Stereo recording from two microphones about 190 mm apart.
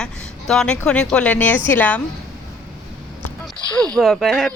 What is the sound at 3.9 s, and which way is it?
Speech, centre (ahead or behind).